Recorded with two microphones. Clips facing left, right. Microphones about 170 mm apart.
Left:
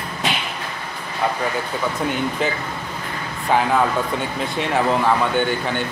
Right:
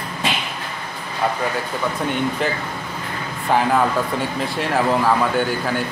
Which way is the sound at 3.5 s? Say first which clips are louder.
Even; centre (ahead or behind).